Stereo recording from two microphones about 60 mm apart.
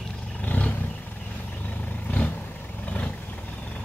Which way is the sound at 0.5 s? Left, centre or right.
Left.